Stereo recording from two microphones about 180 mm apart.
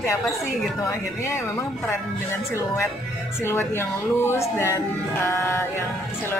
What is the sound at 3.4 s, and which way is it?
Speech, 15° left (ahead or behind).